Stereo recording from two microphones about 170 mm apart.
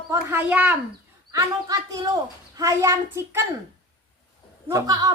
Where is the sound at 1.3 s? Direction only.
20° right (ahead or behind).